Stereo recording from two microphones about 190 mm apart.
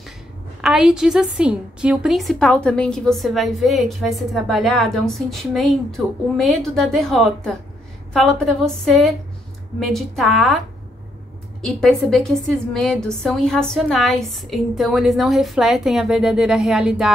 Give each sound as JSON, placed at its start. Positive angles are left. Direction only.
{"t": 0.6, "sound": "a woman's voice", "side_deg": 0}
{"t": 11.6, "sound": "a woman's voice", "side_deg": 0}